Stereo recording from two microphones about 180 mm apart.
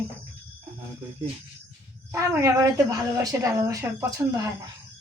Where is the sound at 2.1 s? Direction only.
15° right (ahead or behind).